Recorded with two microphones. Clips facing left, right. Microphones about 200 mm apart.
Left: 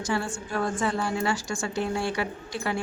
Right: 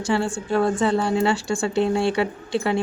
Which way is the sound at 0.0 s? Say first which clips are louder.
Right 6 dB; 30° right (ahead or behind).